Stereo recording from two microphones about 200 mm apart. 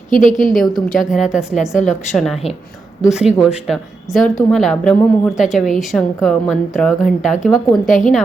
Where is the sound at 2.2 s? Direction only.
Centre (ahead or behind).